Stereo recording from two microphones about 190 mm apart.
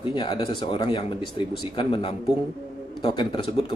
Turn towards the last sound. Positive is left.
turn(degrees=25)  # may be behind; listen again after turning